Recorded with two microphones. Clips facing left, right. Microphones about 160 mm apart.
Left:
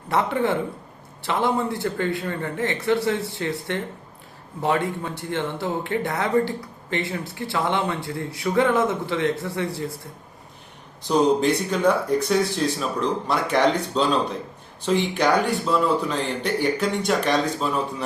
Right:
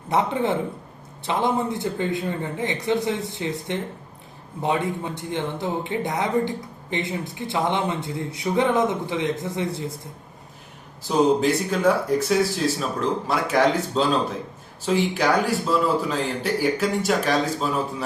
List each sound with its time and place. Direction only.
0.1 s speech: 20° right (ahead or behind)
11.1 s speech: 5° right (ahead or behind)